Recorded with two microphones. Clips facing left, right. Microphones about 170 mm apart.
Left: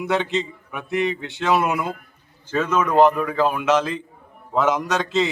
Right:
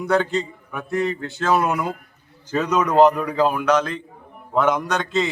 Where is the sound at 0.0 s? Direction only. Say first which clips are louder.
Right 2 dB; centre (ahead or behind).